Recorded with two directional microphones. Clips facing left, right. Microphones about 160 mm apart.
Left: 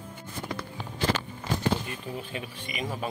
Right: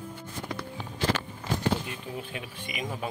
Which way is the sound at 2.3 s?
10° right (ahead or behind).